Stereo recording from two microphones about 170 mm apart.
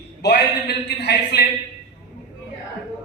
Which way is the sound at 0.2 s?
80° left.